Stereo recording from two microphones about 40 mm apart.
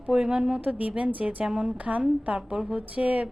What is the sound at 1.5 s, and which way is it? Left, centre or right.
Speech, right.